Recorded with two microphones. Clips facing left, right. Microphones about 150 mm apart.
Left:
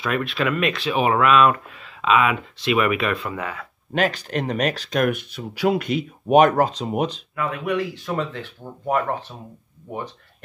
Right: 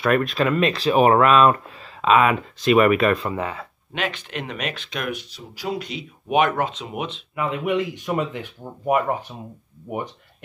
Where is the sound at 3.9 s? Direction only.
40° left (ahead or behind).